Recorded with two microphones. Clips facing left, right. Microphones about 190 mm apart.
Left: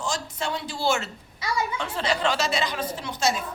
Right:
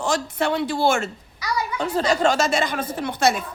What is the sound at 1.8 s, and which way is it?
A woman's voice, 40° right (ahead or behind).